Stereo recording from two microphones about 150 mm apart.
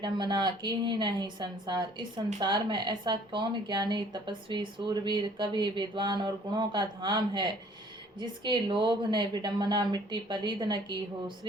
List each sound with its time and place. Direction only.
0.0 s a woman's voice: 30° right (ahead or behind)